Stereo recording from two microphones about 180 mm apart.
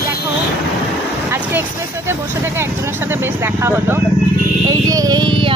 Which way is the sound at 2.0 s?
15° right (ahead or behind).